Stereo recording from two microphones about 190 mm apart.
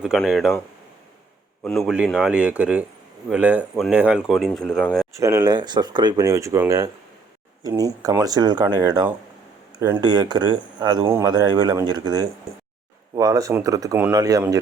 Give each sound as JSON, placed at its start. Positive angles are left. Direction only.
{"t": 0.0, "sound": "speech", "side_deg": 0}
{"t": 1.6, "sound": "speech", "side_deg": 0}
{"t": 5.1, "sound": "speech", "side_deg": -15}